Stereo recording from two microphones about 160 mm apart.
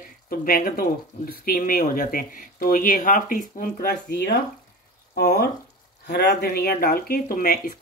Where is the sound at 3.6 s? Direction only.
70° left (ahead or behind).